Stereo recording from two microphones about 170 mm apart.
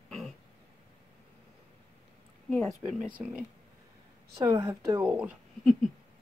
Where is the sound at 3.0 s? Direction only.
10° right (ahead or behind).